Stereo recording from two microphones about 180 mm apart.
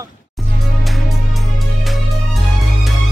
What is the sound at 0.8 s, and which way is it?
Music, centre (ahead or behind).